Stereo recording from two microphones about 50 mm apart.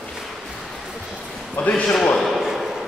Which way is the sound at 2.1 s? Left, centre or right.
Centre.